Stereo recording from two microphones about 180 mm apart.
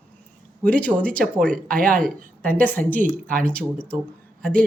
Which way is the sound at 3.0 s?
50° right (ahead or behind).